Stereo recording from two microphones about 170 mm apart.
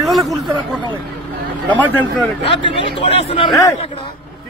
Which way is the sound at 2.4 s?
30° left (ahead or behind).